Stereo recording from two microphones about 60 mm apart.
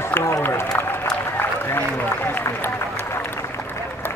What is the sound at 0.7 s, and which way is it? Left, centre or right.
Applause, left.